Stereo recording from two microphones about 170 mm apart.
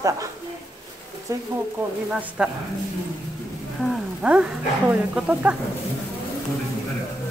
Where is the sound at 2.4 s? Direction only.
5° right (ahead or behind).